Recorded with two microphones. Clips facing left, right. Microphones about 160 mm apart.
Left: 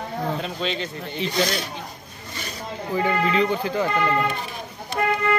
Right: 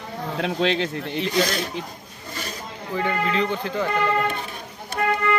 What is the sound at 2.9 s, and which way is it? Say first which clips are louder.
Speech: left 2 dB; 5° left (ahead or behind).